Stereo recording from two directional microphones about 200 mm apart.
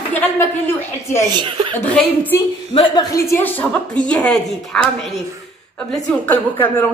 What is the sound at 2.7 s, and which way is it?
A woman's voice, 25° left (ahead or behind).